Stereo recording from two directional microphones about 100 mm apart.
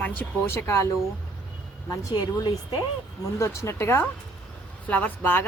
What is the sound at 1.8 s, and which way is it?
Speech, 35° left (ahead or behind).